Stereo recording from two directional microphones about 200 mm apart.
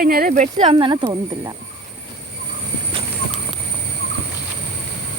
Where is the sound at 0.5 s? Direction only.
25° right (ahead or behind).